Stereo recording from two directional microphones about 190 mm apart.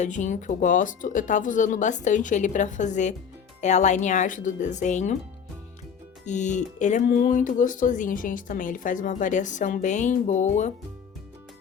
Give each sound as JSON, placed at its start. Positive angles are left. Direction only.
{"t": 0.0, "sound": "speech", "side_deg": 40}
{"t": 6.2, "sound": "speech", "side_deg": 40}